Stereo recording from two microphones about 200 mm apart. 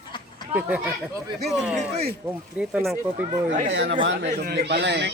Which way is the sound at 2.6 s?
5° right (ahead or behind).